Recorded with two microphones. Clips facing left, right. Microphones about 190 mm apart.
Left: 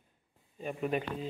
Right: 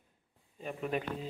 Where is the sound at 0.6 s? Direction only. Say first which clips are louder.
Left 2 dB; 5° left (ahead or behind).